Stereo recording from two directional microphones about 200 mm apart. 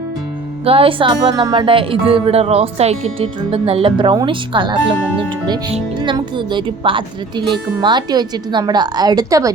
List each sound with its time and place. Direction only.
0.6 s speech: 30° right (ahead or behind)